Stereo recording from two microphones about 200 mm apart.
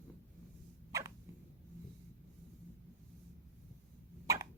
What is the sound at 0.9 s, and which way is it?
Hiccup, 15° right (ahead or behind).